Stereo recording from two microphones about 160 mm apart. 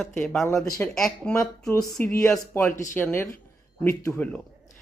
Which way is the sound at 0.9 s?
5° left (ahead or behind).